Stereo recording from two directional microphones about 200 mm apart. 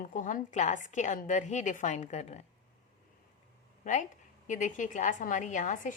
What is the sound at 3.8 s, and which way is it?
A woman's voice, 40° left (ahead or behind).